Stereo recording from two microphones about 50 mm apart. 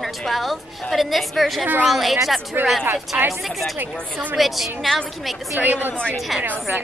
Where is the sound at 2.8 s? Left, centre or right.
Right.